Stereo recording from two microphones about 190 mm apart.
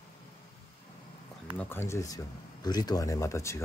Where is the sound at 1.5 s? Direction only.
10° left (ahead or behind).